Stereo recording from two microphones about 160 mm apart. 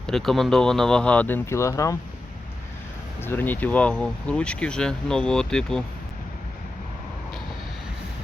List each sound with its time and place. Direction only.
0.1 s speech: centre (ahead or behind); by 2.0 s 20° left (ahead or behind)
3.2 s speech: 10° left (ahead or behind)